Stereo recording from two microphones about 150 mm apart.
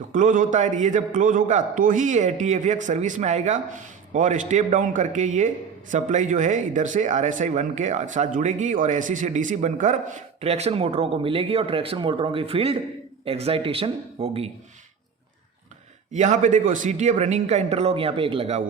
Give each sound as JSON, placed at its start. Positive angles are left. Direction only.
{"t": 0.1, "sound": "a man's voice", "side_deg": -60}
{"t": 16.1, "sound": "speech", "side_deg": -55}